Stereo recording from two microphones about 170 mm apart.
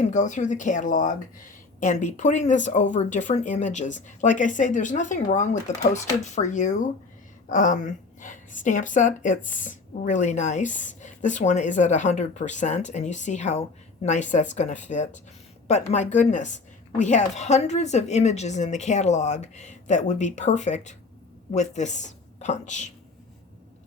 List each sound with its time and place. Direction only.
0.0 s a woman's voice: 45° left (ahead or behind)